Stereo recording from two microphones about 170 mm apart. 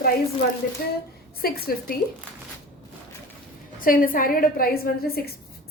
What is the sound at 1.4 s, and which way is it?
Speech, 65° left (ahead or behind).